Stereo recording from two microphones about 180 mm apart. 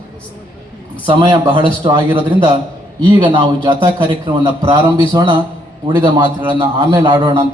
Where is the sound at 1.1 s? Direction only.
30° right (ahead or behind).